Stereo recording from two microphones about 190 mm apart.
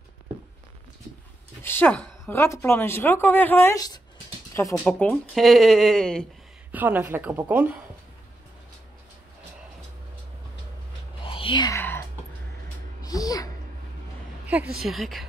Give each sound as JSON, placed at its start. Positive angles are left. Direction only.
{"t": 1.6, "sound": "speech", "side_deg": 10}
{"t": 4.8, "sound": "speech", "side_deg": 5}
{"t": 6.7, "sound": "a woman's voice", "side_deg": -10}
{"t": 11.2, "sound": "a sound", "side_deg": 25}
{"t": 13.0, "sound": "music", "side_deg": 20}
{"t": 14.8, "sound": "speech", "side_deg": 0}